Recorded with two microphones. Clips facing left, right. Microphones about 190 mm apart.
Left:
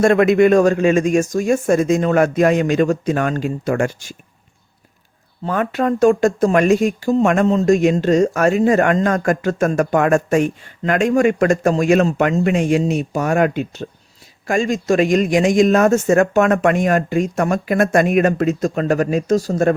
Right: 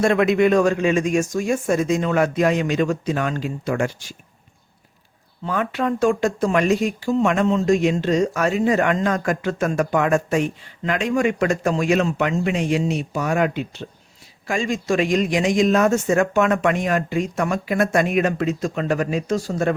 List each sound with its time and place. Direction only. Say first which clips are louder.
0.0 s speech: left 4 dB; 50° left (ahead or behind)
5.5 s speech: left 4 dB; 45° left (ahead or behind)